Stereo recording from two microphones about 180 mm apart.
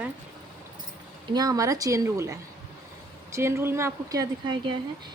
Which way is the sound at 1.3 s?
20° right (ahead or behind).